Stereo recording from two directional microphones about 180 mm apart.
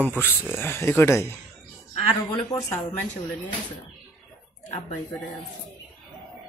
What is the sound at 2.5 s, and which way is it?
Speech, 15° left (ahead or behind).